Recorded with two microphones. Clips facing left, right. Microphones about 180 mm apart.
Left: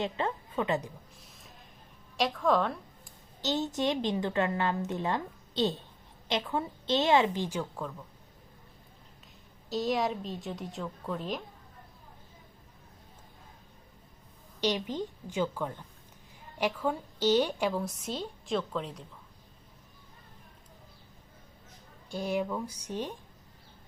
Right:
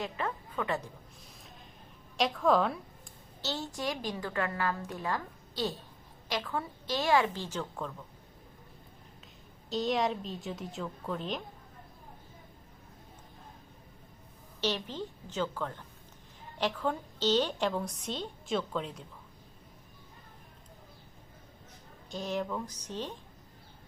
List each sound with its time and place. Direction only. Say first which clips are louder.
0.0 s a woman's voice: left 4 dB; 25° left (ahead or behind)
2.1 s a woman's voice: even; centre (ahead or behind)
3.4 s a woman's voice: left 6 dB; 20° left (ahead or behind)
9.6 s a woman's voice: even; centre (ahead or behind)
14.6 s a woman's voice: left 3 dB; 15° left (ahead or behind)
22.1 s a woman's voice: left 3 dB; 10° left (ahead or behind)